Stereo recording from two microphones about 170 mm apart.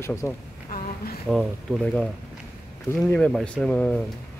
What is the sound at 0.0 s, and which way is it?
Speech, 15° left (ahead or behind).